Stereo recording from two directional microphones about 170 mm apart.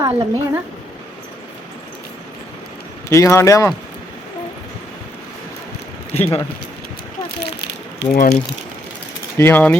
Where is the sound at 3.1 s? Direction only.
15° left (ahead or behind).